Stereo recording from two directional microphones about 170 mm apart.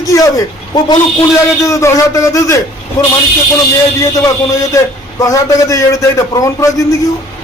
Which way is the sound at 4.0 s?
20° left (ahead or behind).